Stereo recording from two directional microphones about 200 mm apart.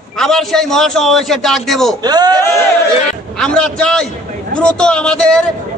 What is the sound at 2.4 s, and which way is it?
A man's voice, 10° left (ahead or behind).